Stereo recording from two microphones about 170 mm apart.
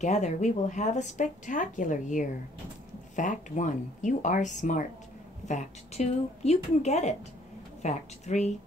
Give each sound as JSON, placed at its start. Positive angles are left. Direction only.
{"t": 0.0, "sound": "a woman's voice", "side_deg": 45}